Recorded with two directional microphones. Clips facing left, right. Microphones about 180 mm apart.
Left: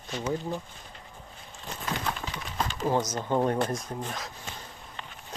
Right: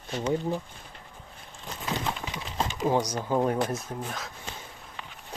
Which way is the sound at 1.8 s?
20° right (ahead or behind).